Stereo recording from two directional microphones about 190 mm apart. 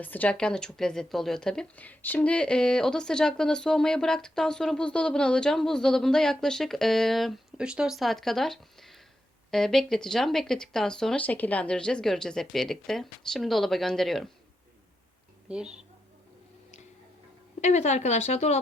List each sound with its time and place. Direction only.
0.0 s speech: 10° left (ahead or behind)
15.4 s speech: 5° right (ahead or behind)
17.6 s speech: 35° left (ahead or behind)